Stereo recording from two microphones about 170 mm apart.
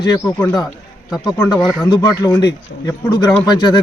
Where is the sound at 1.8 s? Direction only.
20° left (ahead or behind).